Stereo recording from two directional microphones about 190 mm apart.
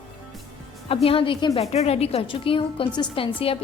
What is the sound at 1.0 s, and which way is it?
A woman's voice, 30° left (ahead or behind).